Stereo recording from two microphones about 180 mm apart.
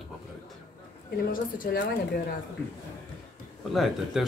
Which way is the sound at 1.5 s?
50° left (ahead or behind).